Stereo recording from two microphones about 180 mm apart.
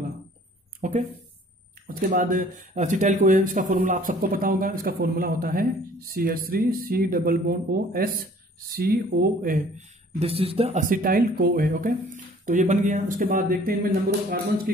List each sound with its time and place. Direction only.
0.8 s speech: 45° right (ahead or behind)
10.1 s speech: 35° right (ahead or behind); by 11.9 s 55° right (ahead or behind)
12.4 s speech: 45° right (ahead or behind)